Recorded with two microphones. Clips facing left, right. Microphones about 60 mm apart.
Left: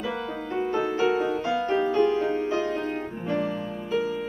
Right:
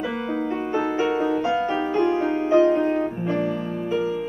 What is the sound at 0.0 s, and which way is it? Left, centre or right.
Music, right.